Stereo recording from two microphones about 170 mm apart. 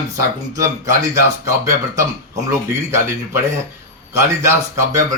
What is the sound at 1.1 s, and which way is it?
A man's voice, 20° right (ahead or behind).